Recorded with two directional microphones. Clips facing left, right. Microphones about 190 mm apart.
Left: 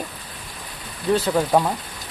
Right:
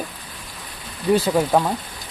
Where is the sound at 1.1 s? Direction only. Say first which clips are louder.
Right 2 dB; 10° right (ahead or behind).